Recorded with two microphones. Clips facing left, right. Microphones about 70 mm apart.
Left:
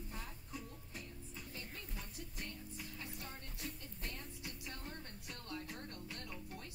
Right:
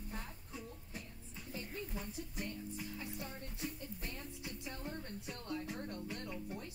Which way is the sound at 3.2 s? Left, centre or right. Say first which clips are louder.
Right 4 dB; centre.